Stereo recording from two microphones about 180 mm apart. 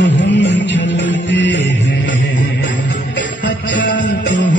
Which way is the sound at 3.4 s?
85° left.